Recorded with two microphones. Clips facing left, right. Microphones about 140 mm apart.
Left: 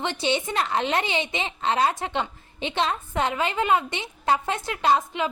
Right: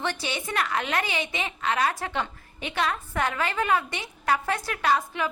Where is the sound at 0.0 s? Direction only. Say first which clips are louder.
Left 5 dB; 20° left (ahead or behind).